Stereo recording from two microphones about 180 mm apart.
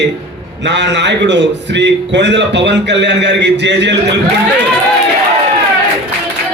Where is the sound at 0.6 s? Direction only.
75° right (ahead or behind).